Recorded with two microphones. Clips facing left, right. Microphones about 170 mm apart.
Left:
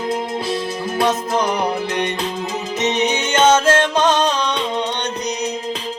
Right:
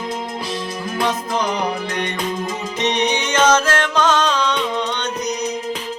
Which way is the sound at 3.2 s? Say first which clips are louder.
Left 3 dB; 25° left (ahead or behind).